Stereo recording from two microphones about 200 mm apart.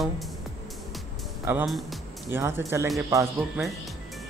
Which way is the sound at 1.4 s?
10° right (ahead or behind).